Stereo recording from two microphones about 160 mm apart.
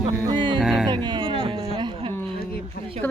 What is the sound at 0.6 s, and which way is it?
Speech, centre (ahead or behind).